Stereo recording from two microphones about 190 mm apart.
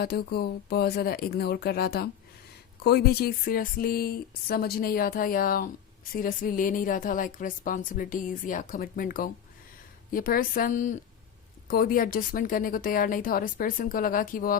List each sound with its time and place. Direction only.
0.0 s speech: 55° left (ahead or behind)